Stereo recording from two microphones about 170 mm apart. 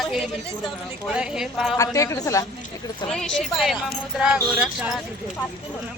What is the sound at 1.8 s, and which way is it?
Speech, 20° left (ahead or behind).